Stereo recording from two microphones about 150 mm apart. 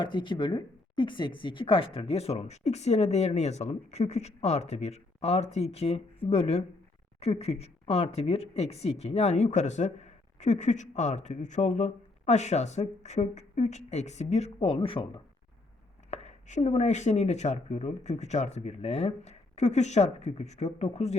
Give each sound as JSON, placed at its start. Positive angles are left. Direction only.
{"t": 0.0, "sound": "speech", "side_deg": 30}
{"t": 16.0, "sound": "speech", "side_deg": 45}